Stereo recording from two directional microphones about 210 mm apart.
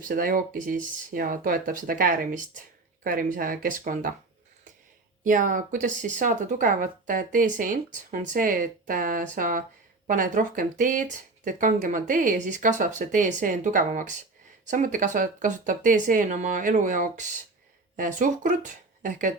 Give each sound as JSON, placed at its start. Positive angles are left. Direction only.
{"t": 0.0, "sound": "speech", "side_deg": -40}
{"t": 5.2, "sound": "speech", "side_deg": -40}